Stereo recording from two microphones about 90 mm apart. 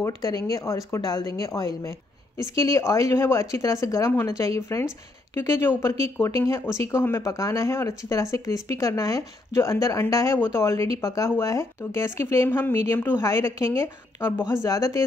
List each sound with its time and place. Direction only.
0.0 s speech: 40° left (ahead or behind)
12.4 s speech: 20° left (ahead or behind)
13.2 s speech: 35° left (ahead or behind)